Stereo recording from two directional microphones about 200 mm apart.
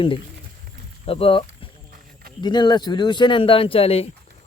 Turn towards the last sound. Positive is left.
turn(degrees=30)  # may be behind; listen again after turning